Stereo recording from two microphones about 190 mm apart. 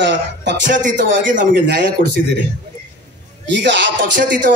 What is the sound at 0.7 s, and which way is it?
Speech, 40° right (ahead or behind).